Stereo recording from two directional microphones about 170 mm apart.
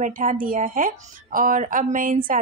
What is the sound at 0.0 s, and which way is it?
A woman's voice, 50° right (ahead or behind).